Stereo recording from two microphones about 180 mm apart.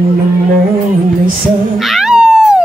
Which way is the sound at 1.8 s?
Centre (ahead or behind).